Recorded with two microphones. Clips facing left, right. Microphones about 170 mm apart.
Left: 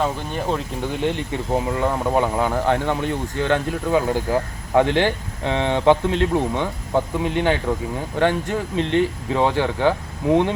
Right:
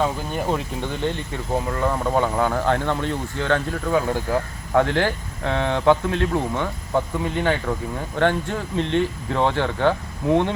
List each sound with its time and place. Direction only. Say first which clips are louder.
0.0 s speech: even; 5° right (ahead or behind)
1.5 s speech: left 1 dB; 15° left (ahead or behind)